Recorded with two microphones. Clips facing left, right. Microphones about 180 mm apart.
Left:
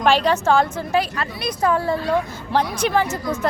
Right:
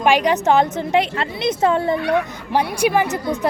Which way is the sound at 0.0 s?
15° right (ahead or behind).